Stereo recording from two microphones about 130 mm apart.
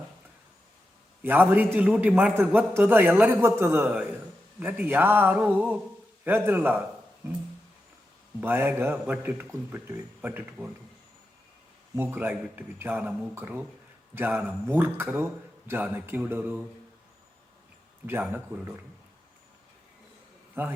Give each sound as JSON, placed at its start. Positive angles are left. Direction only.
{"t": 1.2, "sound": "a man's voice", "side_deg": -15}
{"t": 8.4, "sound": "a man's voice", "side_deg": -15}
{"t": 11.9, "sound": "a man's voice", "side_deg": -15}
{"t": 18.0, "sound": "a man's voice", "side_deg": -15}
{"t": 20.6, "sound": "a man's voice", "side_deg": -20}